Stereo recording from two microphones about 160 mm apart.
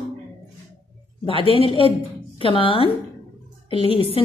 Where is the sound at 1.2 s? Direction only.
35° left (ahead or behind).